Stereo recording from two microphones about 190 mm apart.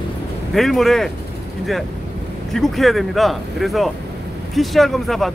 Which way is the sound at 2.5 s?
Centre (ahead or behind).